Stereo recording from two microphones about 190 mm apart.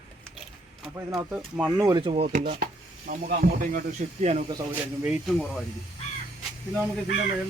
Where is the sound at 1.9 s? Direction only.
25° right (ahead or behind).